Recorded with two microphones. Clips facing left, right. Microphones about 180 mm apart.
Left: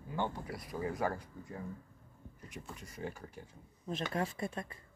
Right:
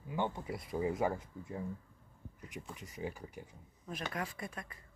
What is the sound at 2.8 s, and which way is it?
Speech, 15° right (ahead or behind).